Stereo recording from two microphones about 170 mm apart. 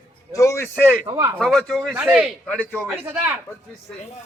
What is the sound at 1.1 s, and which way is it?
Speech, 20° right (ahead or behind).